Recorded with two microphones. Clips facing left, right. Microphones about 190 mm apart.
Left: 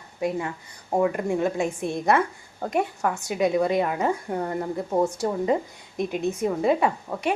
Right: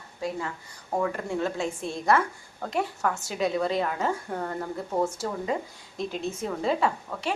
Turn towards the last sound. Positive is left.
turn(degrees=15)  # may be behind; listen again after turning